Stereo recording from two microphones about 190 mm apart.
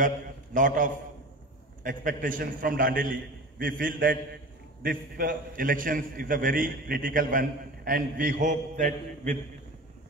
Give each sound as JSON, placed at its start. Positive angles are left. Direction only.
{"t": 0.6, "sound": "a man's voice", "side_deg": -45}